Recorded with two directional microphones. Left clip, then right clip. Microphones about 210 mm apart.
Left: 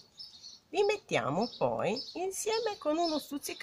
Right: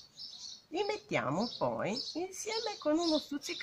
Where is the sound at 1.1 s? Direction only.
50° left (ahead or behind).